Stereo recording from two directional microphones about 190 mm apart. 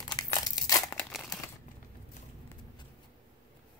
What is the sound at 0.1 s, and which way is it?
Crumpling, 20° left (ahead or behind).